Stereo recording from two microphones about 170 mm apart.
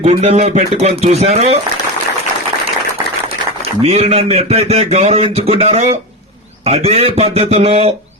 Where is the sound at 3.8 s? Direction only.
35° right (ahead or behind).